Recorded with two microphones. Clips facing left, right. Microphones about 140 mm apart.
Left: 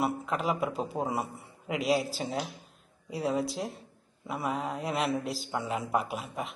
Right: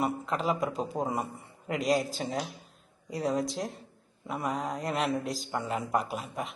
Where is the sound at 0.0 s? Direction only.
5° left (ahead or behind).